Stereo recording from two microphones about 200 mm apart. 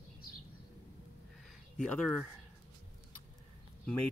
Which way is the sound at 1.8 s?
5° left (ahead or behind).